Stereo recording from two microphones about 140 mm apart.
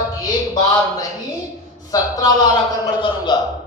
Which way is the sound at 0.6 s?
25° left (ahead or behind).